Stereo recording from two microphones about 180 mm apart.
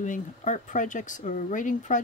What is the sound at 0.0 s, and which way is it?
Speech, 45° left (ahead or behind).